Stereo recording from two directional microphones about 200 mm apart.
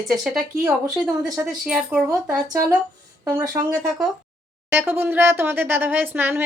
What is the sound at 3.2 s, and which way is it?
Speech, 15° right (ahead or behind).